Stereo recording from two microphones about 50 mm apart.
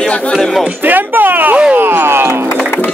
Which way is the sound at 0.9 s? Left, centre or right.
Right.